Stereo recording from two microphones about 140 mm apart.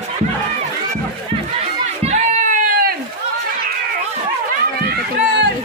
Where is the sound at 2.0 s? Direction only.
60° right (ahead or behind).